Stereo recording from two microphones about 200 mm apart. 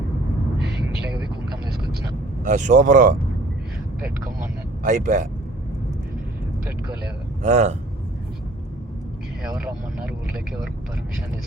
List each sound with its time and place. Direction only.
2.4 s speech: 40° right (ahead or behind)
4.8 s speech: 40° right (ahead or behind)
7.4 s speech: 35° right (ahead or behind)
9.4 s vehicle: 5° right (ahead or behind)